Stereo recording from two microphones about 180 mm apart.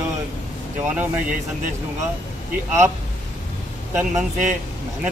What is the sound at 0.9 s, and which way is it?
Speech, 10° right (ahead or behind).